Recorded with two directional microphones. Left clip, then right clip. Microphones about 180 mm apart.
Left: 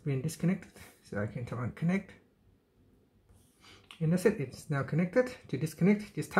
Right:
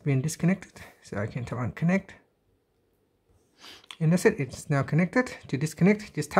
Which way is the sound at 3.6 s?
45° right (ahead or behind).